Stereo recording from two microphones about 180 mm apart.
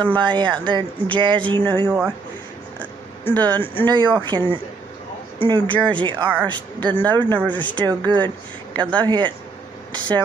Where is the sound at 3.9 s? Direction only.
25° right (ahead or behind).